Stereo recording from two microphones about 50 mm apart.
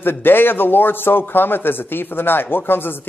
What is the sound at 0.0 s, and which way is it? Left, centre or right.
Speech, left.